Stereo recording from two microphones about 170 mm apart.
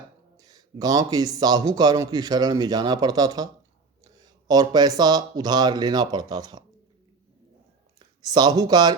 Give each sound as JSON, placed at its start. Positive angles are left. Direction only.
{"t": 0.4, "sound": "a man's voice", "side_deg": -20}
{"t": 7.9, "sound": "speech", "side_deg": -25}